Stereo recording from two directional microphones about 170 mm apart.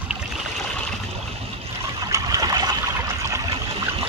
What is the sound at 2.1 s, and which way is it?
Trickle, 20° right (ahead or behind).